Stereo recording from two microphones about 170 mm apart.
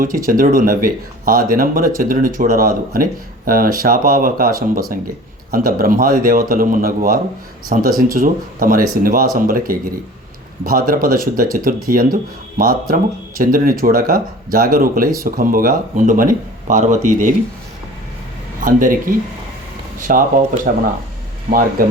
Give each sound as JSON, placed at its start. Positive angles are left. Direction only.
{"t": 0.0, "sound": "speech", "side_deg": -55}
{"t": 18.6, "sound": "speech", "side_deg": -50}